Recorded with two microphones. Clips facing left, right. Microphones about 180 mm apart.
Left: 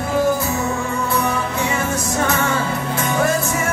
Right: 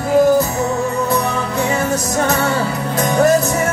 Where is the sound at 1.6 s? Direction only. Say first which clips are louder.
Right 4 dB; 40° right (ahead or behind).